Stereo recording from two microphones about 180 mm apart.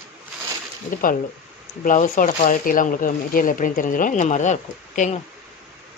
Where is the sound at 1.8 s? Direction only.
50° left (ahead or behind).